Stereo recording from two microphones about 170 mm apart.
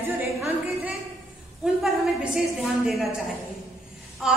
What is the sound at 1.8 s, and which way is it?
Speech, centre (ahead or behind).